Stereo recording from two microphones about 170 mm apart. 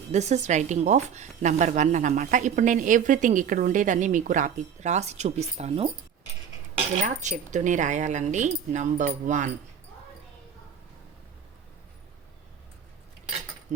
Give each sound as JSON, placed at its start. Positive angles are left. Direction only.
{"t": 0.1, "sound": "a woman's voice", "side_deg": -40}
{"t": 7.0, "sound": "a woman's voice", "side_deg": -45}
{"t": 13.7, "sound": "speech", "side_deg": -45}